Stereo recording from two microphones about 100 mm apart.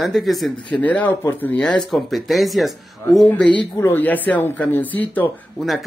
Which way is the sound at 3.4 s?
15° left (ahead or behind).